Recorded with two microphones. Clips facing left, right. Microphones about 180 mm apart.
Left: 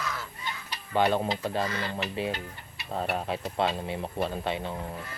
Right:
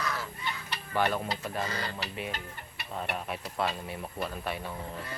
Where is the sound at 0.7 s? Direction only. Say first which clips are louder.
Left 4 dB; 15° left (ahead or behind).